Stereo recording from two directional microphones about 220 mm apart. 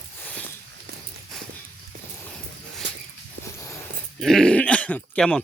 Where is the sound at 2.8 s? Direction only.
50° right (ahead or behind).